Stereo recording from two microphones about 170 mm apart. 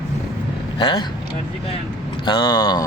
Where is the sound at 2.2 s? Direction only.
25° left (ahead or behind).